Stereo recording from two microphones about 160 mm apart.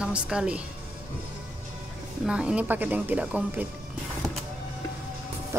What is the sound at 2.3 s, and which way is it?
Speech, 5° right (ahead or behind).